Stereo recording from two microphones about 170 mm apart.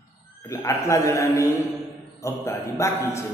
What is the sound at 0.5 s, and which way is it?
A man's voice, 15° left (ahead or behind).